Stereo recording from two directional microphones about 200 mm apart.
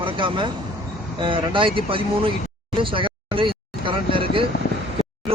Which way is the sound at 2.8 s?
25° right (ahead or behind).